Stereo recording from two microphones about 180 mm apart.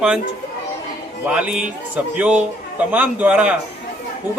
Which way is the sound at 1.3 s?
5° right (ahead or behind).